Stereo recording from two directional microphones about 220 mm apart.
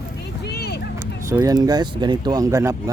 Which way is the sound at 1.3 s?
15° right (ahead or behind).